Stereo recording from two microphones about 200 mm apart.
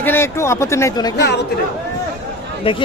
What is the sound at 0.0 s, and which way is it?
Speech, 10° left (ahead or behind).